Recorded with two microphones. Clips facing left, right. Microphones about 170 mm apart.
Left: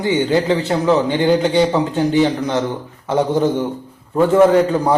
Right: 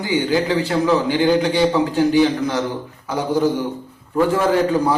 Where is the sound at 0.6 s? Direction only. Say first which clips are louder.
Left 2 dB; 20° left (ahead or behind).